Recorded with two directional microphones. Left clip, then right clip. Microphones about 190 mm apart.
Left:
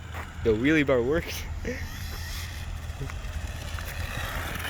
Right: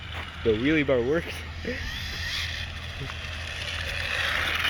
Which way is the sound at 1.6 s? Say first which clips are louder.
Right 5 dB; 15° left (ahead or behind).